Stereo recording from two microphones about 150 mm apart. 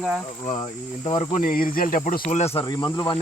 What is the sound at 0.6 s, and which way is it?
Speech, 40° left (ahead or behind).